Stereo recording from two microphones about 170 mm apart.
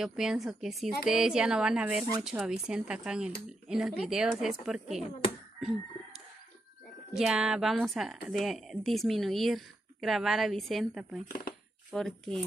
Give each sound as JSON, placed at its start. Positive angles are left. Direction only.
{"t": 0.0, "sound": "speech", "side_deg": -5}
{"t": 7.2, "sound": "speech", "side_deg": -5}
{"t": 11.2, "sound": "speech", "side_deg": 60}
{"t": 11.9, "sound": "speech", "side_deg": 0}